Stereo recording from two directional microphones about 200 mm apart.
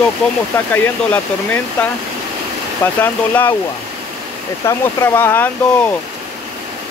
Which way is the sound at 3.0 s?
10° left (ahead or behind).